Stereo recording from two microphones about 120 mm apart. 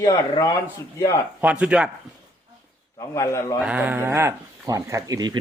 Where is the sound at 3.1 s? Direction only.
25° left (ahead or behind).